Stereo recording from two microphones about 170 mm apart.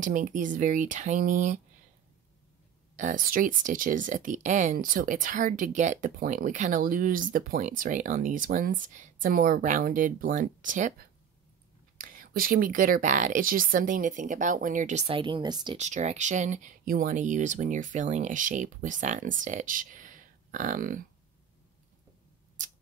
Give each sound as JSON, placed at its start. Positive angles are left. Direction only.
{"t": 0.0, "sound": "speech", "side_deg": -50}
{"t": 3.0, "sound": "speech", "side_deg": -50}
{"t": 15.8, "sound": "speech", "side_deg": -45}